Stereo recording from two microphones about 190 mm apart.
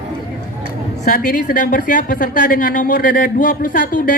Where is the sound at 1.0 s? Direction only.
45° left (ahead or behind).